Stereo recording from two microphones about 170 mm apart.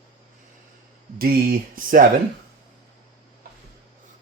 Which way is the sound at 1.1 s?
60° right (ahead or behind).